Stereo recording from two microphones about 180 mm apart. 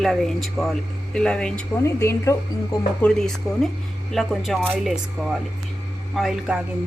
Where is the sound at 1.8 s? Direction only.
15° left (ahead or behind).